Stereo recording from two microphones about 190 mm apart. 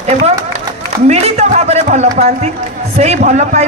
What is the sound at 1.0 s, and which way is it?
A man's voice, 35° right (ahead or behind).